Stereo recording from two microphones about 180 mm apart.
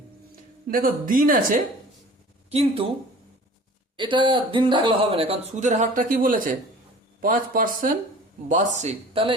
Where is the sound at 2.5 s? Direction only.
35° right (ahead or behind).